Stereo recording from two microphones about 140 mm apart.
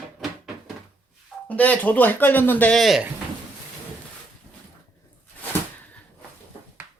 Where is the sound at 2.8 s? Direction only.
Centre (ahead or behind).